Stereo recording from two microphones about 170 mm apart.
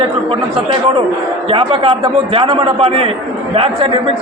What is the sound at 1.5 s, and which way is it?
A man's voice, 30° right (ahead or behind).